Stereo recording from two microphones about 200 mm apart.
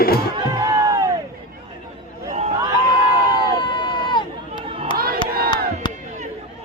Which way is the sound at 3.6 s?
25° left (ahead or behind).